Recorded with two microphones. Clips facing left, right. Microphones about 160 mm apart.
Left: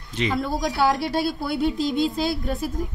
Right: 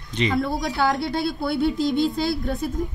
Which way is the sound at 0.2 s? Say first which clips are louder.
Right 1 dB; centre (ahead or behind).